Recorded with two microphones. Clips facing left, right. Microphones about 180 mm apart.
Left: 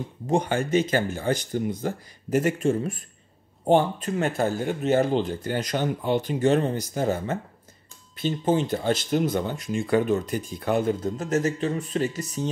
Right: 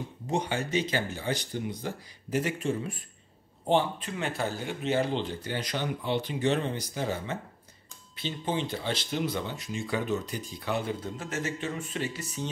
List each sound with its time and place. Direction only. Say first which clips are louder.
0.3 s speech: left 7 dB; 50° left (ahead or behind)